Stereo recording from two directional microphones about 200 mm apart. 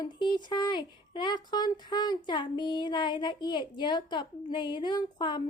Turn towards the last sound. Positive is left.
turn(degrees=20)  # may be behind; listen again after turning